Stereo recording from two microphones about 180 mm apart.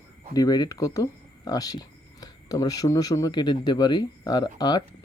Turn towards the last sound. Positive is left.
turn(degrees=25)  # may be behind; listen again after turning